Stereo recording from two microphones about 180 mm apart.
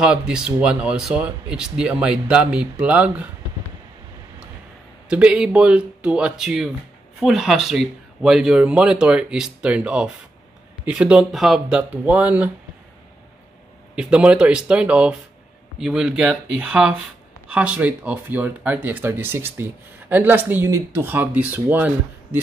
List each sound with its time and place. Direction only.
0.0 s speech: 5° right (ahead or behind)
5.1 s speech: 5° right (ahead or behind)
13.9 s speech: 5° right (ahead or behind)